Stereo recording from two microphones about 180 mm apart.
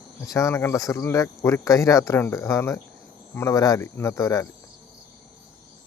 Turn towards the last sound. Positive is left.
turn(degrees=20)  # may be behind; listen again after turning